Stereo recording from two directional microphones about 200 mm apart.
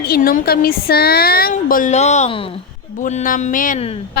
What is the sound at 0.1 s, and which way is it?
A woman's voice, 45° left (ahead or behind).